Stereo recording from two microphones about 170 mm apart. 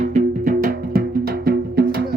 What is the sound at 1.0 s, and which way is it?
Music, 65° right (ahead or behind).